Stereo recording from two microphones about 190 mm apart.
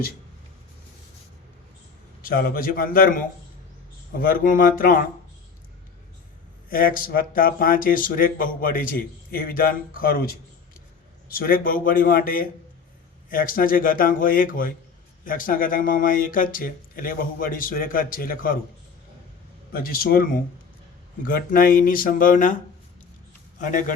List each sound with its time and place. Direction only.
2.2 s speech: 50° left (ahead or behind)
6.7 s speech: 50° left (ahead or behind)
19.7 s speech: 50° left (ahead or behind)
23.6 s speech: 45° left (ahead or behind)